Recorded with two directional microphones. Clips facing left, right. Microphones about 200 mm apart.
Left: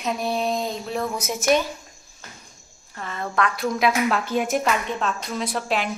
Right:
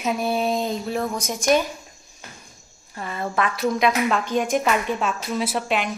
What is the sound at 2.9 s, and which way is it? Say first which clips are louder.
Speech: right 1 dB; 10° right (ahead or behind).